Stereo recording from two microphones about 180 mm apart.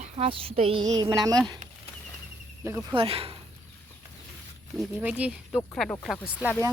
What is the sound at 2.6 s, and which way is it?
Speech, 15° right (ahead or behind).